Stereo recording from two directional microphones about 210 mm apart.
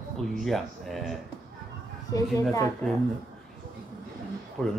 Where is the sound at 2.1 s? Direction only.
15° left (ahead or behind).